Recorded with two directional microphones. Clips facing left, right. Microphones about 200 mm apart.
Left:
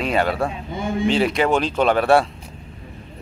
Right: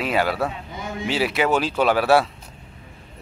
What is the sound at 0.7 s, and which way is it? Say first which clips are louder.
Speech: left 7 dB; 30° left (ahead or behind).